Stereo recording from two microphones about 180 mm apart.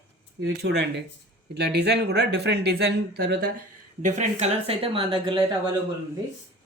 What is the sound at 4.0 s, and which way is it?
Speech, 40° right (ahead or behind).